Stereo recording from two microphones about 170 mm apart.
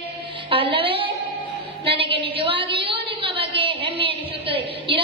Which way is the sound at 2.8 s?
30° right (ahead or behind).